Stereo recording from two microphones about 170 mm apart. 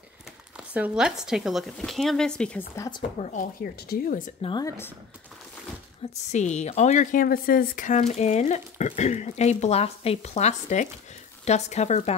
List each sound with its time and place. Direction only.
0.7 s speech: 5° right (ahead or behind)
2.7 s a woman's voice: 20° left (ahead or behind)
3.2 s speech: 45° left (ahead or behind)
3.9 s speech: 60° left (ahead or behind)
4.4 s a woman's voice: 30° left (ahead or behind)
4.6 s speech: 15° left (ahead or behind)
6.3 s speech: 40° left (ahead or behind)